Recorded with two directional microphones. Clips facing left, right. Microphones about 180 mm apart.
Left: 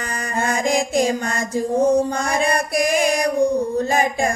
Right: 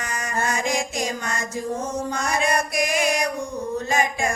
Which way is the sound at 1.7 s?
35° left (ahead or behind).